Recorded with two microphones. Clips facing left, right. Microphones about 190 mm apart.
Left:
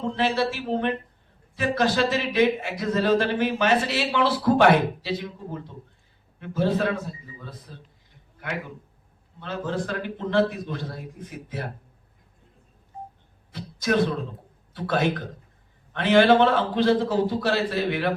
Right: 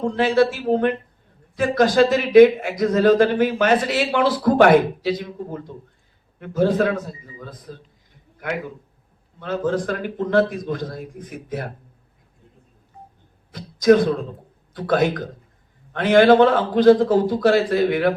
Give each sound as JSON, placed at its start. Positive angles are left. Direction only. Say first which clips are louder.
{"t": 0.0, "sound": "a man's voice", "louder": "right 6 dB", "side_deg": -40}
{"t": 13.5, "sound": "speech", "louder": "right 10 dB", "side_deg": -40}